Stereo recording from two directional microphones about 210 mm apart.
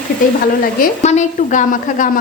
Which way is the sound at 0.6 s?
40° left (ahead or behind).